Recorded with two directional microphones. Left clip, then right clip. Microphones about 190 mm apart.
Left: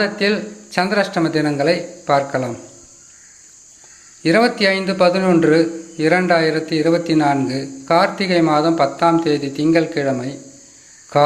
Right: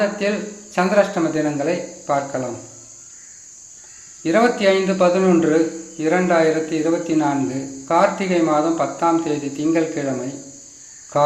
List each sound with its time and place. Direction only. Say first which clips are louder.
0.0 s a man's voice: left 2 dB; 30° left (ahead or behind)
4.2 s a man's voice: left 2 dB; 35° left (ahead or behind)